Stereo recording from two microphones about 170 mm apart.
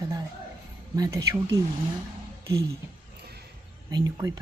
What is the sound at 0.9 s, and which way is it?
Speech, 20° right (ahead or behind).